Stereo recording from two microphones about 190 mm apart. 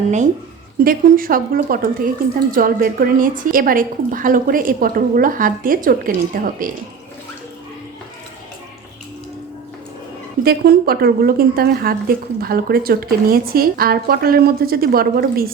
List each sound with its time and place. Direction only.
0.9 s a woman's voice: 50° right (ahead or behind)
10.4 s a woman's voice: 55° right (ahead or behind)